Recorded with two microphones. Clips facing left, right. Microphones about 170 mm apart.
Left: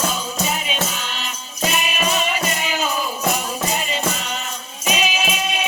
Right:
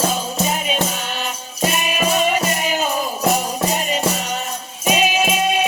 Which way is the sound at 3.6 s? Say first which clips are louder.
Right 3 dB; 40° right (ahead or behind).